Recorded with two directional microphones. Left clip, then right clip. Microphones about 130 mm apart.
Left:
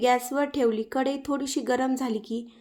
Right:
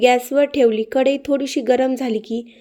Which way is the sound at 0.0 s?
20° right (ahead or behind).